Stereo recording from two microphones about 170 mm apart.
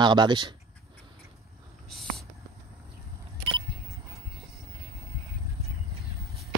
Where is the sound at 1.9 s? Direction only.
Centre (ahead or behind).